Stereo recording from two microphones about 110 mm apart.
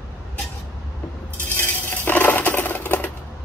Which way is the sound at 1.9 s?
15° left (ahead or behind).